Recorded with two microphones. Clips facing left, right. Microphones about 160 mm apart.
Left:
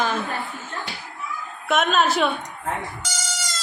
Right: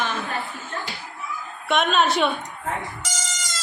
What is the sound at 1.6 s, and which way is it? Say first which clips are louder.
Speech: even; centre (ahead or behind).